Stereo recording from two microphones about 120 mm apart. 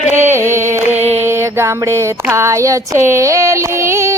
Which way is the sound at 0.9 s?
60° right (ahead or behind).